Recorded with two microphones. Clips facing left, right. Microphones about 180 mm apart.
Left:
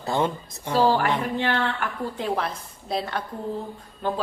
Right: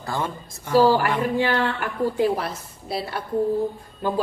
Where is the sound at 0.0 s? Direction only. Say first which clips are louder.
Left 4 dB; 25° left (ahead or behind).